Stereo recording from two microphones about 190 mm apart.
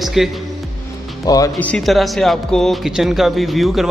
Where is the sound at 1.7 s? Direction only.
Centre (ahead or behind).